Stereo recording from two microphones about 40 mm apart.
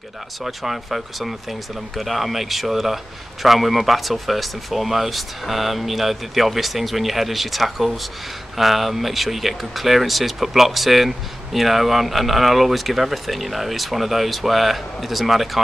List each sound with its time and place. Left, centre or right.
0.4 s speech: centre